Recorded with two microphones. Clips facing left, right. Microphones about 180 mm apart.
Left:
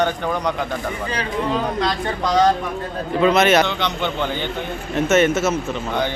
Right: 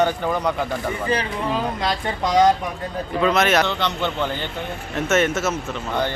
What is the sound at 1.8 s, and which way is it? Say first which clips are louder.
Speech: left 1 dB; 20° right (ahead or behind).